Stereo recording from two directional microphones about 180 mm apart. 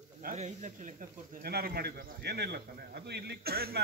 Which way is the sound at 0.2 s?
45° right (ahead or behind).